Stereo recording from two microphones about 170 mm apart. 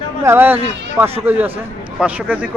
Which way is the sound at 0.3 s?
10° right (ahead or behind).